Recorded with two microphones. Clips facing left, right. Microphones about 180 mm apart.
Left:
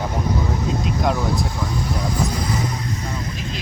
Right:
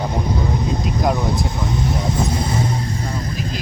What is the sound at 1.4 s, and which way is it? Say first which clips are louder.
Speech: right 3 dB; 20° right (ahead or behind).